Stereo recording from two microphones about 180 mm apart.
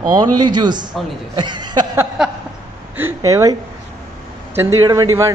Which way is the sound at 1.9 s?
5° right (ahead or behind).